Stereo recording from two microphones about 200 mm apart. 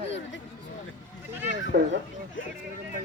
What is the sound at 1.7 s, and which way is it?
Speech, 55° right (ahead or behind).